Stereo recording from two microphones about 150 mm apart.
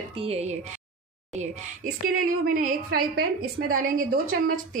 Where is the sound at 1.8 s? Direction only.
70° right (ahead or behind).